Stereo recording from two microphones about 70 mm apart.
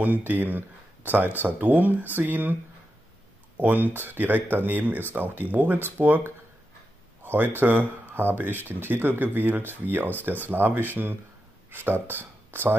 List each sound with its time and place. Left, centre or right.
0.0 s speech: right
3.5 s speech: right